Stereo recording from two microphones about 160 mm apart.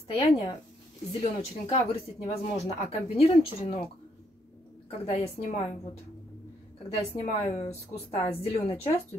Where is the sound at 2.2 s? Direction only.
45° left (ahead or behind).